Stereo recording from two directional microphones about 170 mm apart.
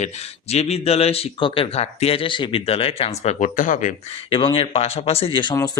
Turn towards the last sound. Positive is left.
turn(degrees=20)  # may be behind; listen again after turning